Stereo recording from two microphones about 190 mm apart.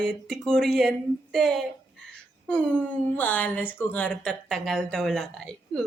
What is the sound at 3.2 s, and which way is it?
Speech, 10° left (ahead or behind).